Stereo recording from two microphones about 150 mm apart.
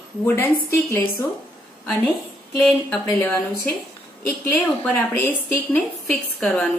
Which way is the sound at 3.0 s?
20° left (ahead or behind).